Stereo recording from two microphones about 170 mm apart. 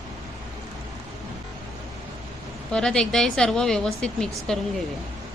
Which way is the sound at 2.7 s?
5° left (ahead or behind).